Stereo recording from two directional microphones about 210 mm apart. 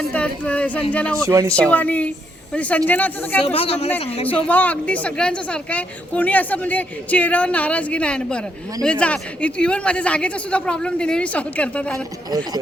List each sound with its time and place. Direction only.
0.1 s a woman's voice: 5° left (ahead or behind)
1.1 s speech: 15° right (ahead or behind)
1.5 s a woman's voice: 5° left (ahead or behind)
3.4 s a woman's voice: 25° left (ahead or behind)
4.3 s a woman's voice: 5° left (ahead or behind)